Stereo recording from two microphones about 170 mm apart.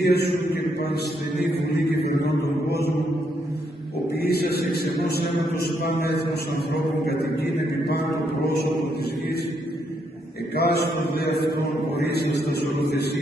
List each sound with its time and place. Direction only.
0.0 s mantra: 75° left (ahead or behind)
1.7 s mantra: 70° left (ahead or behind)
4.2 s mantra: 70° left (ahead or behind)
10.5 s mantra: 70° left (ahead or behind)